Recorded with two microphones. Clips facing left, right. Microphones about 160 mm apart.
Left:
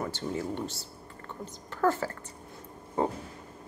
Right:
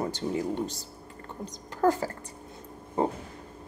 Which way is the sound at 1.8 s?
35° right (ahead or behind).